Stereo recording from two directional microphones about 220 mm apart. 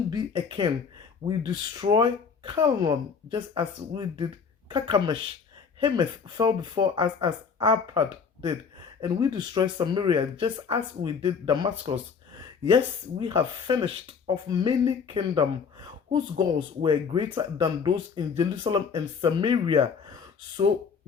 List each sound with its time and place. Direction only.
0.1 s speech: 20° right (ahead or behind)
16.8 s speech: 20° right (ahead or behind)